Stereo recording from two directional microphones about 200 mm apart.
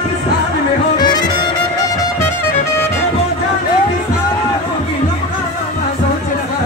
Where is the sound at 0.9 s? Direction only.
20° left (ahead or behind).